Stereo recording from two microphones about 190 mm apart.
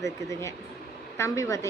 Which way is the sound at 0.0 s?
15° left (ahead or behind).